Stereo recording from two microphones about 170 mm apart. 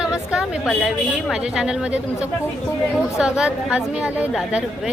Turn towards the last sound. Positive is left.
turn(degrees=-5)  # may be behind; listen again after turning